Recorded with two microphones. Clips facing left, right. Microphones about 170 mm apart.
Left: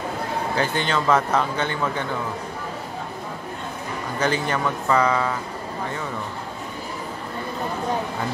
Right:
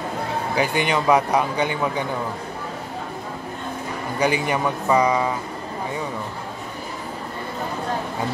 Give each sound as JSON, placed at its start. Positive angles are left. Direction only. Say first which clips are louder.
{"t": 0.6, "sound": "a man's voice", "louder": "right 3 dB", "side_deg": -15}
{"t": 4.2, "sound": "a man's voice", "louder": "right 2 dB", "side_deg": -15}